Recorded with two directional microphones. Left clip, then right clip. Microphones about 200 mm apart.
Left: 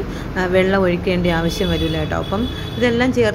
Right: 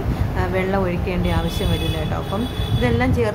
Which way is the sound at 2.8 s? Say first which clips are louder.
Left 4 dB; 20° left (ahead or behind).